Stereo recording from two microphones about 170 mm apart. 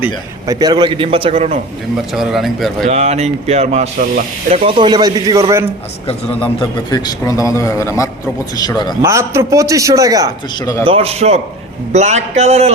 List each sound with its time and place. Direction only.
0.4 s speech: 20° right (ahead or behind)
2.1 s speech: centre (ahead or behind)
2.8 s a man's voice: 40° right (ahead or behind); by 5.4 s 25° right (ahead or behind)
6.6 s a man's voice: 25° left (ahead or behind)
9.0 s a man's voice: 15° right (ahead or behind)
10.8 s speech: 35° right (ahead or behind)